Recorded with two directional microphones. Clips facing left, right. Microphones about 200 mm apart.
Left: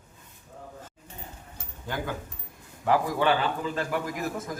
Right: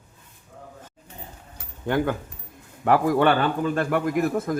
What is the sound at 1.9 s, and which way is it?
A man's voice, 60° right (ahead or behind).